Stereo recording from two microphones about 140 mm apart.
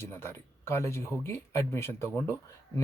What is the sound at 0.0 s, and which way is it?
A man's voice, 15° left (ahead or behind).